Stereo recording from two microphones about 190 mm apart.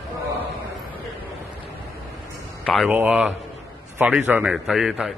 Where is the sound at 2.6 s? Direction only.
5° left (ahead or behind).